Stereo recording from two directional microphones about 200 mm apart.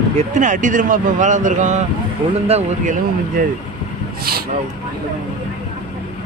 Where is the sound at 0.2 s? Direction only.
40° right (ahead or behind).